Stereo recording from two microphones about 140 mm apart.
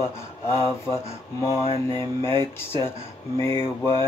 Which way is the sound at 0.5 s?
20° left (ahead or behind).